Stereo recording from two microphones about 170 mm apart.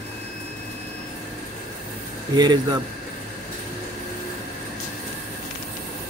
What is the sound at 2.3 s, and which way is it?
Speech, 25° right (ahead or behind).